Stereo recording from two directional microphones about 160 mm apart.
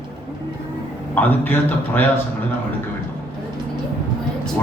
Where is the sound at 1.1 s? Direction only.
10° left (ahead or behind).